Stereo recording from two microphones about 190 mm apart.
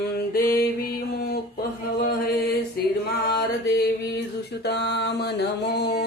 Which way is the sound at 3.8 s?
60° left (ahead or behind).